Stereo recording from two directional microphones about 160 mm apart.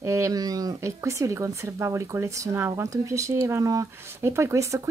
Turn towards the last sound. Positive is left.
turn(degrees=-20)  # may be behind; listen again after turning